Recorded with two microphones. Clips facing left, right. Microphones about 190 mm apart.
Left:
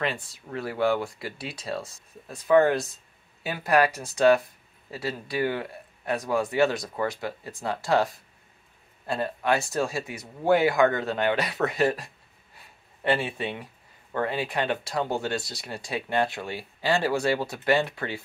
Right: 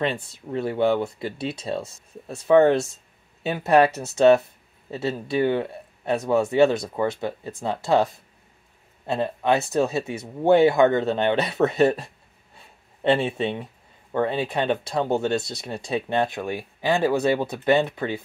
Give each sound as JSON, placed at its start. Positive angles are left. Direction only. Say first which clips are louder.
{"t": 0.0, "sound": "speech", "louder": "right 4 dB", "side_deg": -25}
{"t": 12.5, "sound": "a sound", "louder": "right 3 dB", "side_deg": -25}
{"t": 14.1, "sound": "speech", "louder": "right 4 dB", "side_deg": -25}